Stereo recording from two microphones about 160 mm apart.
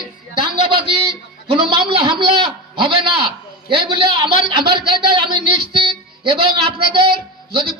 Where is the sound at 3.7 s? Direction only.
30° right (ahead or behind).